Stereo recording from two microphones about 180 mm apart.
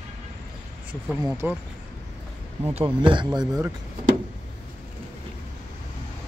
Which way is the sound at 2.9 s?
25° right (ahead or behind).